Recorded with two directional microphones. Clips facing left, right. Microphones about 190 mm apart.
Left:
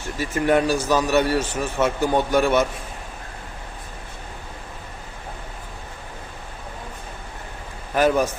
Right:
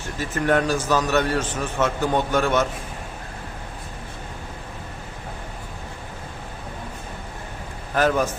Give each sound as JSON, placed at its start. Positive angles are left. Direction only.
{"t": 0.2, "sound": "a man's voice", "side_deg": 10}
{"t": 7.9, "sound": "a man's voice", "side_deg": 10}